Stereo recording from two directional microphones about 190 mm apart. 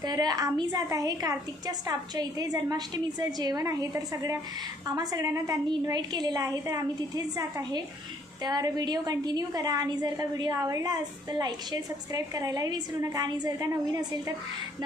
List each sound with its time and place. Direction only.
0.0 s a woman's voice: 20° right (ahead or behind)
8.4 s a woman's voice: 20° right (ahead or behind)